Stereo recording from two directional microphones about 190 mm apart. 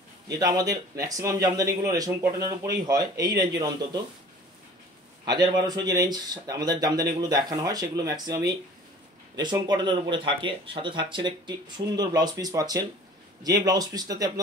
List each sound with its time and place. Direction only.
0.3 s speech: 20° right (ahead or behind)
5.2 s speech: 20° right (ahead or behind)